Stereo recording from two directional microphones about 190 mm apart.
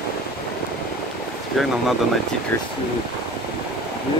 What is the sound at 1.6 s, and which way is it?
Speech, centre (ahead or behind).